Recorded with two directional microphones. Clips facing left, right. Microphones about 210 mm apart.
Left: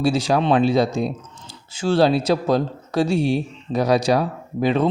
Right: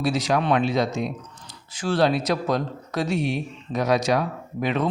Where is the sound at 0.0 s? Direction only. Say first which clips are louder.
Left 4 dB; 30° left (ahead or behind).